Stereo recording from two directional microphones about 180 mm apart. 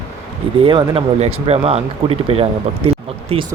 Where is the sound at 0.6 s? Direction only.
30° right (ahead or behind).